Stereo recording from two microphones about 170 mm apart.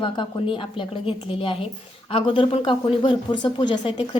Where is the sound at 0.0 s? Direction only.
30° left (ahead or behind).